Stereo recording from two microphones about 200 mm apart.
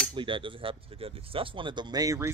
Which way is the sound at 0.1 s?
25° right (ahead or behind).